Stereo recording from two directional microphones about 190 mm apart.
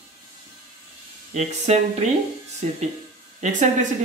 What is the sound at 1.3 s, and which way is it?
Speech, 35° right (ahead or behind).